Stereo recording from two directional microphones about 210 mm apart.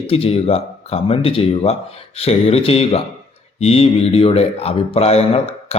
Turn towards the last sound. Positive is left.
turn(degrees=30)  # may be behind; listen again after turning